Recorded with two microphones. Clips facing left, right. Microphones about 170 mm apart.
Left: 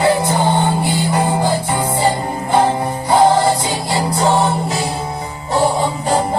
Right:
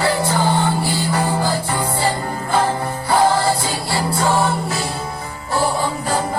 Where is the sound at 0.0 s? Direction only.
20° left (ahead or behind).